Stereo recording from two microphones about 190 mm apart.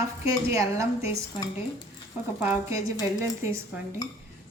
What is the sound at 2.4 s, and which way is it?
Speech, 15° right (ahead or behind).